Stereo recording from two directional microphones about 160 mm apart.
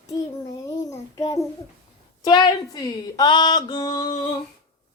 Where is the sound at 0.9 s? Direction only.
20° left (ahead or behind).